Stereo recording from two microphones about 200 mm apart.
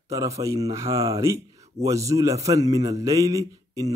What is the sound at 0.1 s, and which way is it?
A man's voice, 15° right (ahead or behind).